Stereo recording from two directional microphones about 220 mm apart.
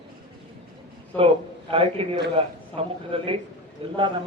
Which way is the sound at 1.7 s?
25° right (ahead or behind).